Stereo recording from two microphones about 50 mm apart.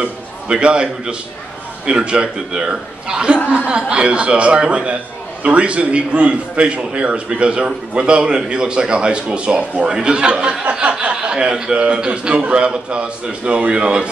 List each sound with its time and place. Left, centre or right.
0.0 s a man's voice: centre